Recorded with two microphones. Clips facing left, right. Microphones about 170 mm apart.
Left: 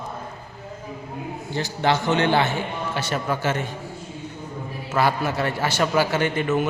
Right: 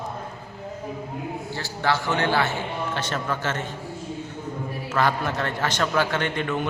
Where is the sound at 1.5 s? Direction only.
20° left (ahead or behind).